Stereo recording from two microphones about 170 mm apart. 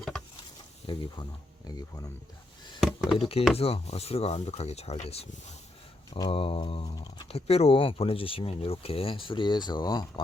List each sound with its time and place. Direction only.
0.9 s speech: 25° left (ahead or behind)
2.8 s a sound: centre (ahead or behind)
3.2 s speech: 35° left (ahead or behind)